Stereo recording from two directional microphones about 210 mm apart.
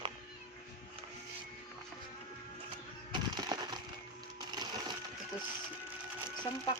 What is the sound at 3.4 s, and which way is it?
Wood, 20° right (ahead or behind).